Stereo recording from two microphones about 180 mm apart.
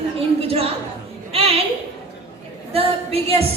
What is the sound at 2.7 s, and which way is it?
Speech, 35° right (ahead or behind).